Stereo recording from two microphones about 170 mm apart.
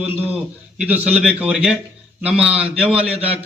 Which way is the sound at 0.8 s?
10° right (ahead or behind).